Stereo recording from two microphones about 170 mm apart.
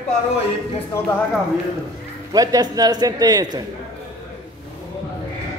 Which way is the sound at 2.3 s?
20° right (ahead or behind).